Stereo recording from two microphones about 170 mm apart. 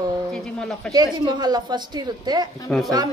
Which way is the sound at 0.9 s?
25° right (ahead or behind).